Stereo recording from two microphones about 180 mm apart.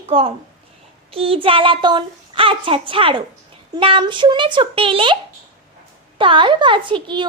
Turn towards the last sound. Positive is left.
turn(degrees=-25)  # may be behind; listen again after turning